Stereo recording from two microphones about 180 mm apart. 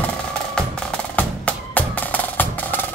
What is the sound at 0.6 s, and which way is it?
Music, 5° left (ahead or behind).